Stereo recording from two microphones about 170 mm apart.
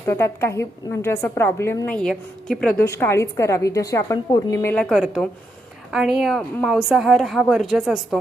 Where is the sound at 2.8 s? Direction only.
15° left (ahead or behind).